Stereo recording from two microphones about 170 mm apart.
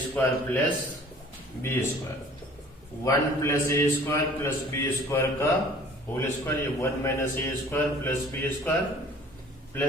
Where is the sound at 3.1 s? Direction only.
15° left (ahead or behind).